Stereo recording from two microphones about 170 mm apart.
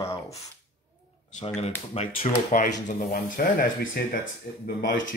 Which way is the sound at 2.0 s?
50° left (ahead or behind).